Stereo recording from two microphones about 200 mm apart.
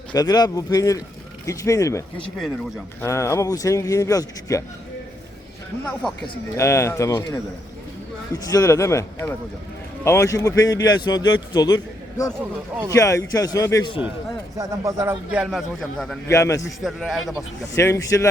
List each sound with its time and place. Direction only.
0.1 s speech: 20° left (ahead or behind)
5.8 s a man's voice: centre (ahead or behind)
6.2 s speech: 15° left (ahead or behind)
8.4 s a man's voice: 15° left (ahead or behind)
12.4 s speech: 10° right (ahead or behind)
13.0 s speech: 15° left (ahead or behind)
14.6 s a man's voice: 15° right (ahead or behind); by 16.1 s centre (ahead or behind)
16.3 s speech: 15° left (ahead or behind)
16.6 s a man's voice: centre (ahead or behind)
17.7 s speech: 15° left (ahead or behind)